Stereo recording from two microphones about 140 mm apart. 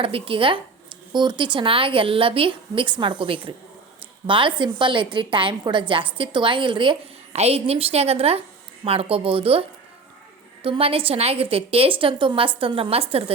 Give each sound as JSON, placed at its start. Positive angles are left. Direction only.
{"t": 0.0, "sound": "a woman's voice", "side_deg": -40}
{"t": 7.3, "sound": "a woman's voice", "side_deg": -45}